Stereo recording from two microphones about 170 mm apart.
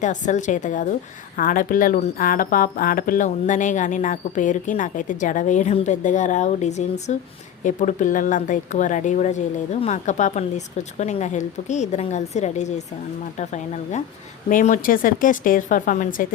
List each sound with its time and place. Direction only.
0.0 s speech: 45° left (ahead or behind)